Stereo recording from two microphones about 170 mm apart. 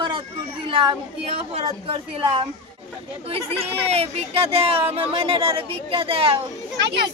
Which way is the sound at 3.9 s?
35° right (ahead or behind).